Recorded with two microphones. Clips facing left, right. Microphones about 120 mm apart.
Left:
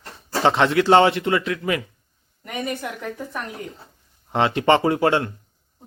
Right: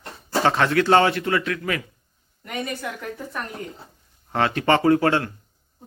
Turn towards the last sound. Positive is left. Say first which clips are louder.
# right 1 dB
turn(degrees=25)  # may be behind; listen again after turning